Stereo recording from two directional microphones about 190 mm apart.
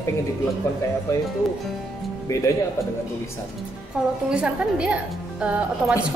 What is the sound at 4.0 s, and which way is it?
A woman's voice, 5° right (ahead or behind).